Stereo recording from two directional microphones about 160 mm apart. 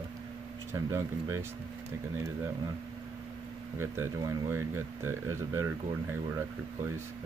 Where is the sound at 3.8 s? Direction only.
15° right (ahead or behind).